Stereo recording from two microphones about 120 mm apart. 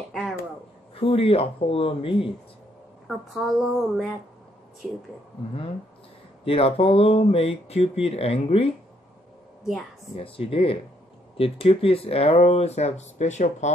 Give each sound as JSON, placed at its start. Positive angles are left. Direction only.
{"t": 0.1, "sound": "a sound", "side_deg": 0}
{"t": 0.9, "sound": "speech", "side_deg": 55}
{"t": 3.1, "sound": "speech", "side_deg": 0}
{"t": 6.4, "sound": "speech", "side_deg": 55}
{"t": 9.7, "sound": "speech", "side_deg": 0}
{"t": 10.1, "sound": "speech", "side_deg": 50}